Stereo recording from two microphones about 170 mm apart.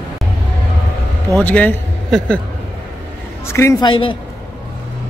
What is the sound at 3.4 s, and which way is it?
Speech, 15° left (ahead or behind).